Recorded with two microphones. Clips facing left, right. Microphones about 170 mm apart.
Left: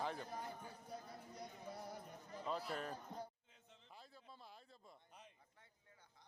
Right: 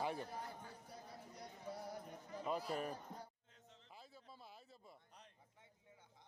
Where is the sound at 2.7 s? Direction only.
10° right (ahead or behind).